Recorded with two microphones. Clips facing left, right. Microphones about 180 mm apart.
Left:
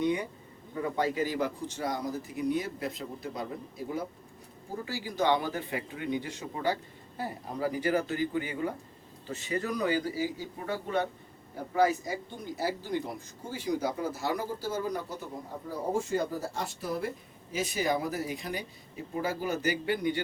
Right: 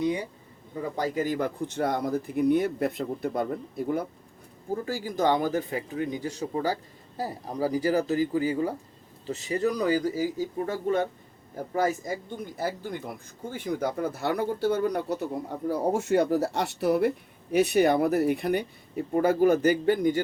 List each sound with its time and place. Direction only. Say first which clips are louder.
0.9 s a man's voice: right 2 dB; 45° right (ahead or behind)